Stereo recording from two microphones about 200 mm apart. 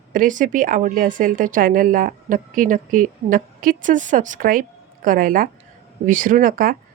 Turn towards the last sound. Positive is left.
turn(degrees=-45)  # may be behind; listen again after turning